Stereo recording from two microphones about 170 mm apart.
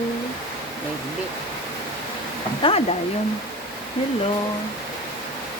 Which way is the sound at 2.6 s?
35° left (ahead or behind).